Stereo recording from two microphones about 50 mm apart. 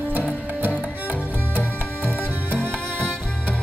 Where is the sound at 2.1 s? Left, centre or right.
Left.